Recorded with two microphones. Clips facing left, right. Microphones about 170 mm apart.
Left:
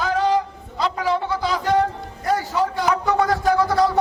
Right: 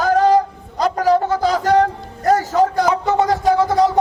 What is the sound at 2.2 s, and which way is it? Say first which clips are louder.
Music: right 6 dB; 45° right (ahead or behind).